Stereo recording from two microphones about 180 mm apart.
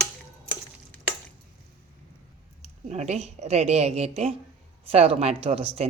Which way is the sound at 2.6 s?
40° right (ahead or behind).